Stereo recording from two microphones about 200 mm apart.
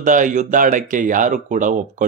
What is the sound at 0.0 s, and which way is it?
Speech, 40° right (ahead or behind).